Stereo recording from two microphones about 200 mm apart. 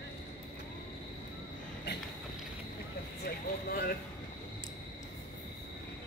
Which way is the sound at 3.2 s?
45° left (ahead or behind).